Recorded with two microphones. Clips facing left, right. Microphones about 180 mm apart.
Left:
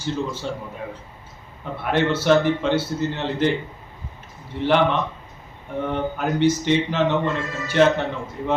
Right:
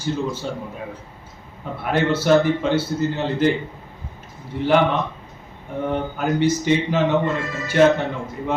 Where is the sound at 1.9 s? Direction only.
10° right (ahead or behind).